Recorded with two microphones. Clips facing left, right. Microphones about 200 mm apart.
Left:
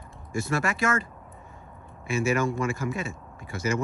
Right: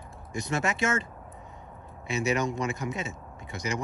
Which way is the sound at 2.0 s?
20° right (ahead or behind).